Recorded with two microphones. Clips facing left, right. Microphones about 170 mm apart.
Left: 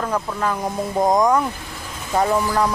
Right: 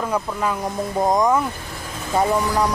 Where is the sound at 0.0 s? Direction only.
10° right (ahead or behind).